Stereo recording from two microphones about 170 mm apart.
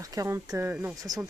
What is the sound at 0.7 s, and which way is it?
Speech, 5° right (ahead or behind).